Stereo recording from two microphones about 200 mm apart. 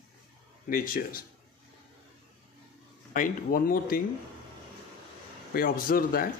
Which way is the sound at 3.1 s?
45° left (ahead or behind).